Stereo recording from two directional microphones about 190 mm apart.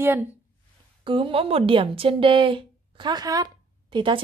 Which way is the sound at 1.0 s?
25° right (ahead or behind).